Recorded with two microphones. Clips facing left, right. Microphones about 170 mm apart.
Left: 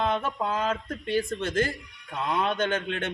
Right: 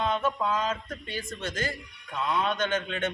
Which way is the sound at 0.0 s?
55° left (ahead or behind).